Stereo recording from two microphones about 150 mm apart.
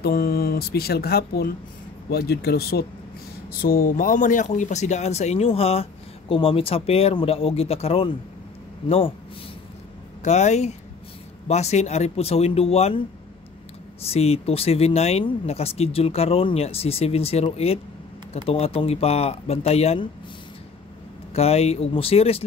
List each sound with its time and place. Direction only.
0.0 s speech: 85° left
3.6 s speech: 70° left (ahead or behind); by 9.1 s 40° left (ahead or behind)
10.2 s speech: 50° left (ahead or behind)
14.0 s speech: 40° left (ahead or behind)
21.3 s speech: 45° left (ahead or behind)